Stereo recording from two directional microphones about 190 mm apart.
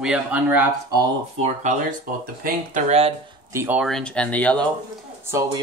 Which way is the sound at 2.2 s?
50° right (ahead or behind).